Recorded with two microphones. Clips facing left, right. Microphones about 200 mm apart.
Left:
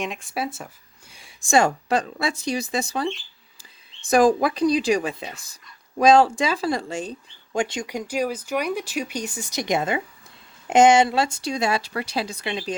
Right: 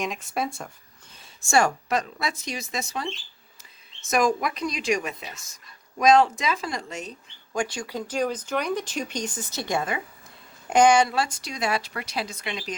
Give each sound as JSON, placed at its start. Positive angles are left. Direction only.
{"t": 0.0, "sound": "speech", "side_deg": 0}
{"t": 1.1, "sound": "a sound", "side_deg": 10}
{"t": 2.2, "sound": "a woman's voice", "side_deg": 30}